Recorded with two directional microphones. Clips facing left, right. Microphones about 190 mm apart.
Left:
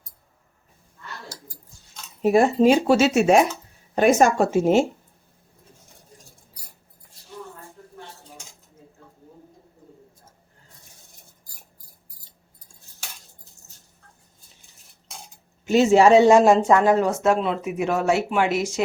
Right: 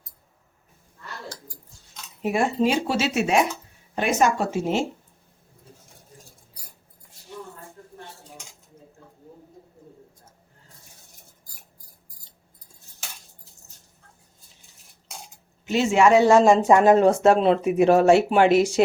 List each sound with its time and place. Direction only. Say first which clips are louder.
2.2 s speech: left 6 dB; 40° left (ahead or behind)
15.6 s speech: left 4 dB; 40° left (ahead or behind)
16.6 s speech: right 1 dB; 10° right (ahead or behind)
16.8 s speech: right 3 dB; 25° right (ahead or behind)